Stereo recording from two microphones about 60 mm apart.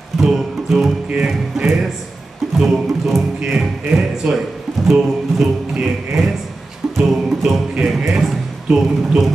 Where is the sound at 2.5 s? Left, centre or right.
Centre.